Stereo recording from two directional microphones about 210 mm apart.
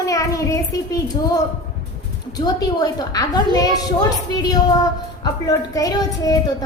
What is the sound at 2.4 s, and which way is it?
A woman's voice, 20° left (ahead or behind).